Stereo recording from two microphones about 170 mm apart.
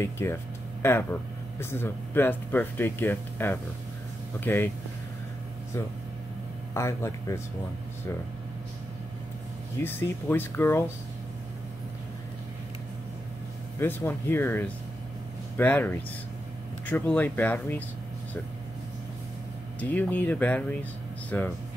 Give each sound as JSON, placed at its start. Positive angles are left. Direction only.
{"t": 0.0, "sound": "speech", "side_deg": 15}
{"t": 6.7, "sound": "speech", "side_deg": 15}
{"t": 9.8, "sound": "speech", "side_deg": 10}
{"t": 13.7, "sound": "speech", "side_deg": 15}
{"t": 19.8, "sound": "speech", "side_deg": 10}